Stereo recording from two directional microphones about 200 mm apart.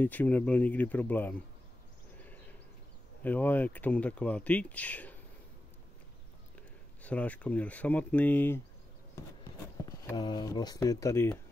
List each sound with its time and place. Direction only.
0.0 s speech: 10° left (ahead or behind)
2.1 s a sound: 10° left (ahead or behind)
3.2 s speech: 10° left (ahead or behind)
7.0 s speech: 5° left (ahead or behind)
9.8 s speech: 20° left (ahead or behind)